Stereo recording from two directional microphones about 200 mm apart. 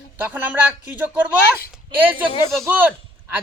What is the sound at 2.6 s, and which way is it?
Speech, 10° right (ahead or behind).